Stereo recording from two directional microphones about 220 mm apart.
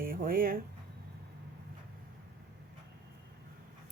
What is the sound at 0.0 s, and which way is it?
Speech, 40° right (ahead or behind).